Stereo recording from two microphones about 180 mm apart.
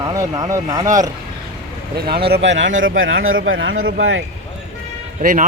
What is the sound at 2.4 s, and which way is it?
A man's voice, 90° right.